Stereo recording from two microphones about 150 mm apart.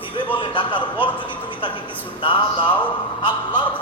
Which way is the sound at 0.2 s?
35° left (ahead or behind).